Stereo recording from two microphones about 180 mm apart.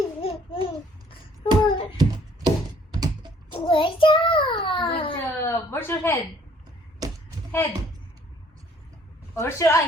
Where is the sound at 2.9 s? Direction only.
25° right (ahead or behind).